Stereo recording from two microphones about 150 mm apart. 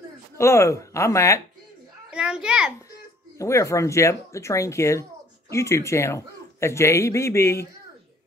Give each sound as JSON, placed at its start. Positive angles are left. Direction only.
{"t": 0.4, "sound": "speech", "side_deg": 20}
{"t": 2.0, "sound": "a child's voice", "side_deg": -5}
{"t": 2.9, "sound": "speech", "side_deg": 20}